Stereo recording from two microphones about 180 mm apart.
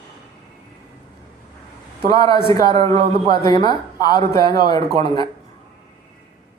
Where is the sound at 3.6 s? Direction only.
20° left (ahead or behind).